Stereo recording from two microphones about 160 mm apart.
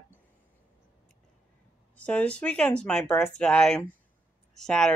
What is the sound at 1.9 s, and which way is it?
Speech, 10° left (ahead or behind).